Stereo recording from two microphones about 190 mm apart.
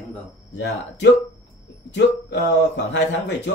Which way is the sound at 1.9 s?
70° left (ahead or behind).